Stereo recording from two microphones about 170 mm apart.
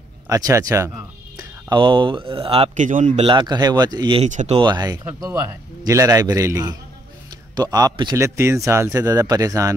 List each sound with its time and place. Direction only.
0.3 s speech: 20° right (ahead or behind); by 3.3 s 45° right (ahead or behind)
3.3 s speech: 25° right (ahead or behind)
4.3 s speech: 45° right (ahead or behind)
4.6 s speech: 25° right (ahead or behind)